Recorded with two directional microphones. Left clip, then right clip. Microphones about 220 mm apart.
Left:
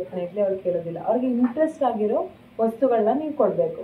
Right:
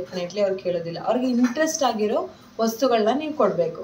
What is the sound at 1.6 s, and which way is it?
Speech, 15° right (ahead or behind).